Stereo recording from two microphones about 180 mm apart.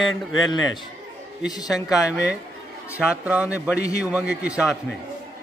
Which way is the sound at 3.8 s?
20° left (ahead or behind).